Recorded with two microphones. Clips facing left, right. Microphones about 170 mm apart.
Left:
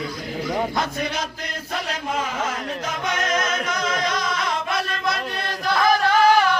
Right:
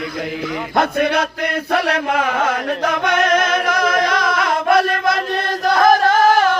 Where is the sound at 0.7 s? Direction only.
60° right (ahead or behind).